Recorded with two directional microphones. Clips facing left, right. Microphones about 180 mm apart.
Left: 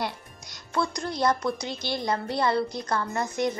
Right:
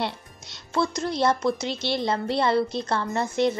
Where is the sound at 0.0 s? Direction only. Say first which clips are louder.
Right 2 dB; 25° right (ahead or behind).